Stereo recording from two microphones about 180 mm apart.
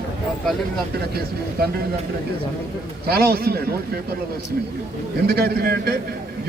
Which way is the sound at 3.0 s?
60° right (ahead or behind).